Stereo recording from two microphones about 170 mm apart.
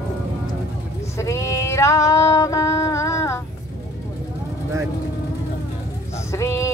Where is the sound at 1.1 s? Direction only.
20° left (ahead or behind).